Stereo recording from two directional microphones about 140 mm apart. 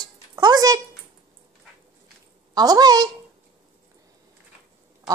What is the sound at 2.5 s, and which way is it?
Speech, 30° right (ahead or behind).